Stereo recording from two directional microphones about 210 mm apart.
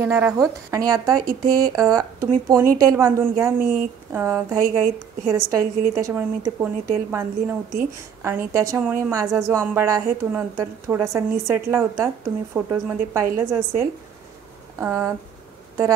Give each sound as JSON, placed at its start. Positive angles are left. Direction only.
{"t": 0.0, "sound": "a woman's voice", "side_deg": -10}
{"t": 3.5, "sound": "speech", "side_deg": -40}
{"t": 4.1, "sound": "a woman's voice", "side_deg": -15}
{"t": 8.5, "sound": "a woman's voice", "side_deg": -15}